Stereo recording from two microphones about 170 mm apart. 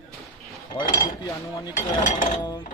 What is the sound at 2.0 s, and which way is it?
Ratchet, 50° left (ahead or behind).